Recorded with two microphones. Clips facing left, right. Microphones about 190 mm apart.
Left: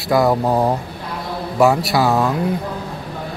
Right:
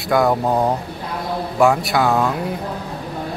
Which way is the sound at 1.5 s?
Centre (ahead or behind).